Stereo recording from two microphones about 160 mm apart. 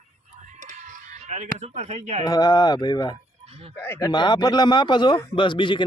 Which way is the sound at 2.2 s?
25° left (ahead or behind).